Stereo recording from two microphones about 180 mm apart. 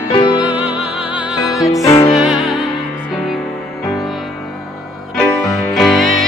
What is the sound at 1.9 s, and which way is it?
Music, 15° left (ahead or behind).